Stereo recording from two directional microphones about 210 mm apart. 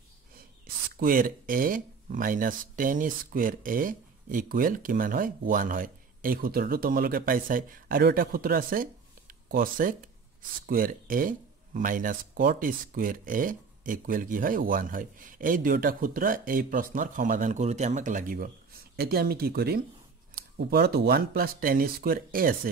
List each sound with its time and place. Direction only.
0.9 s speech: 40° right (ahead or behind)